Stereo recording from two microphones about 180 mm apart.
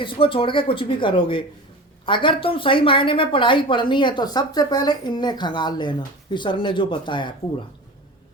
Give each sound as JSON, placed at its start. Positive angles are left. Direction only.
{"t": 0.0, "sound": "speech", "side_deg": 30}